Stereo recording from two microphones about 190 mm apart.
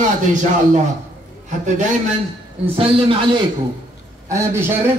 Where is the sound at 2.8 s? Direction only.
30° right (ahead or behind).